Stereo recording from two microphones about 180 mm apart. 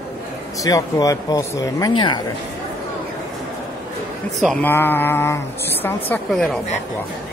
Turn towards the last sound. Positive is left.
turn(degrees=5)  # may be behind; listen again after turning